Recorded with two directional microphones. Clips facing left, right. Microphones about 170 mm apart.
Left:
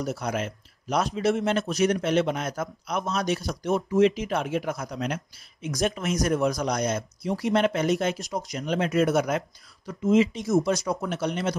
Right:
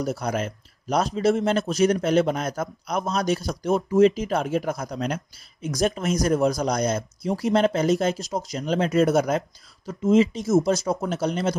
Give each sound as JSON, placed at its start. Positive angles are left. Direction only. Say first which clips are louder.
{"t": 0.0, "sound": "speech", "louder": "right 3 dB", "side_deg": -35}